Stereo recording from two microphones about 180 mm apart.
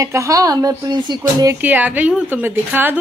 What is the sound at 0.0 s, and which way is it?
A woman's voice, 15° right (ahead or behind).